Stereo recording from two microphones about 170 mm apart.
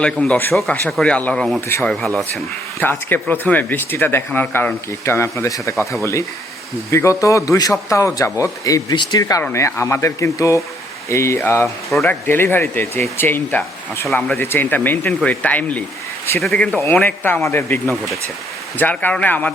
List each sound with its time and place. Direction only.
0.0 s speech: 5° left (ahead or behind)
11.9 s speech: centre (ahead or behind)
12.2 s speech: 15° left (ahead or behind)